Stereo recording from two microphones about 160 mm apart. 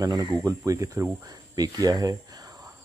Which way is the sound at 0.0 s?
25° right (ahead or behind).